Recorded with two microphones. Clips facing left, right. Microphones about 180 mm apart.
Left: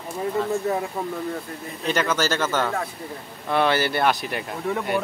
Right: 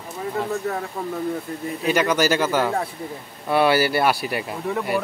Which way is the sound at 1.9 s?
15° right (ahead or behind).